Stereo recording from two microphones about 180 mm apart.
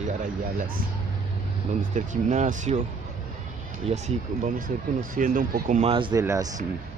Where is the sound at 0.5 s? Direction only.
50° right (ahead or behind).